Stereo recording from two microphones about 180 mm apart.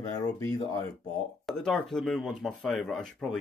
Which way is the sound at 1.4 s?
Centre (ahead or behind).